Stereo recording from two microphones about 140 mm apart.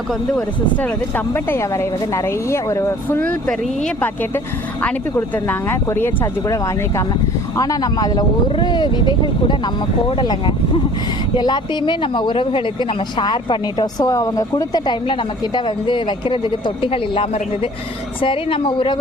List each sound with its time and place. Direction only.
0.1 s speech: 5° left (ahead or behind); by 18.9 s 40° left (ahead or behind)